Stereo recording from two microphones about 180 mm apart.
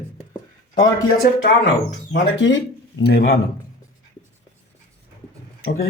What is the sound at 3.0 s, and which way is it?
Speech, 60° left (ahead or behind).